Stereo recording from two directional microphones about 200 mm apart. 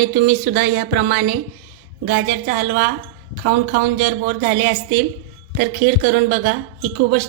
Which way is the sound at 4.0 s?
45° right (ahead or behind).